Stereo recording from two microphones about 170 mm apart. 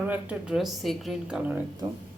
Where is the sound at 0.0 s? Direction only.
10° right (ahead or behind).